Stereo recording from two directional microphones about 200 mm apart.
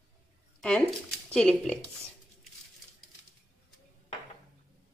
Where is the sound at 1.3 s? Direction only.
5° left (ahead or behind).